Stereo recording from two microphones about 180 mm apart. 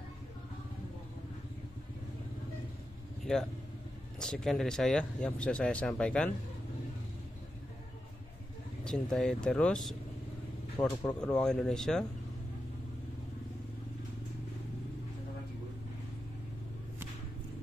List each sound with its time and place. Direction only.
4.2 s speech: 5° left (ahead or behind)
8.8 s speech: 5° left (ahead or behind)